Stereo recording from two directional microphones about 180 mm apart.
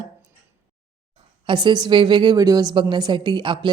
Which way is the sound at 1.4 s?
25° right (ahead or behind).